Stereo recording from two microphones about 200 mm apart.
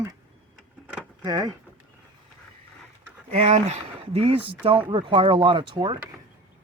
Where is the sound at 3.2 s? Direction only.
35° right (ahead or behind).